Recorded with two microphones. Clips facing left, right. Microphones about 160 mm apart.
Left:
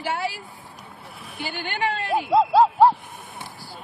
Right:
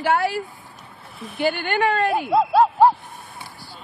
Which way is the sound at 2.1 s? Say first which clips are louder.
Even; centre (ahead or behind).